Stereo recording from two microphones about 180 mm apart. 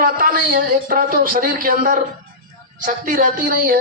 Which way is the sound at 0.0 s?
50° right (ahead or behind).